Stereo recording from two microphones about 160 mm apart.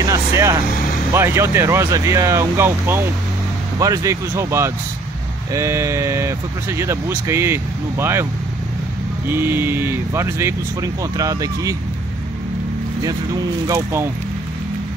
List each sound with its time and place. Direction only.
0.0 s vehicle: 20° right (ahead or behind)
1.1 s speech: 15° right (ahead or behind)
9.3 s speech: 15° right (ahead or behind)
13.7 s speech: 15° right (ahead or behind)